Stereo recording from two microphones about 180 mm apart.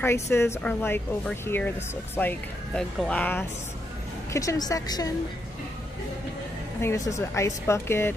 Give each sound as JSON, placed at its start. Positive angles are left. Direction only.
{"t": 0.0, "sound": "a woman's voice", "side_deg": 15}
{"t": 6.8, "sound": "speech", "side_deg": 15}